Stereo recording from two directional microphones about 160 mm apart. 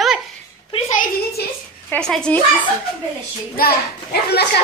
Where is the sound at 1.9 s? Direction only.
5° left (ahead or behind).